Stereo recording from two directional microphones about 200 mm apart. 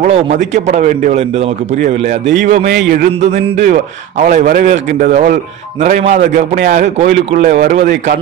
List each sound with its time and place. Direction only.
0.0 s a man's voice: 35° right (ahead or behind)
2.4 s a man's voice: 45° right (ahead or behind)